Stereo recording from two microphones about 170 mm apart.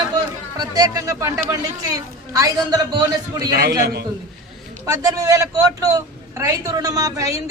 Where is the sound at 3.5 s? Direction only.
70° right (ahead or behind).